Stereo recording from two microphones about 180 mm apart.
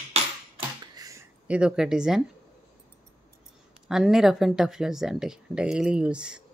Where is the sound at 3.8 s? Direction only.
5° right (ahead or behind).